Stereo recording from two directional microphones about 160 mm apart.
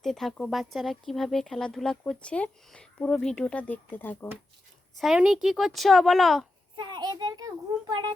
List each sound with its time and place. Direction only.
0.0 s speech: centre (ahead or behind)
4.9 s speech: centre (ahead or behind)
6.7 s a child's voice: 30° right (ahead or behind)